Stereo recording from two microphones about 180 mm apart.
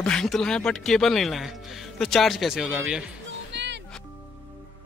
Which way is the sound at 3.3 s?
75° right (ahead or behind).